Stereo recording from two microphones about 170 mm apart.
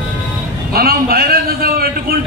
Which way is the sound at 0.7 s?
65° right (ahead or behind).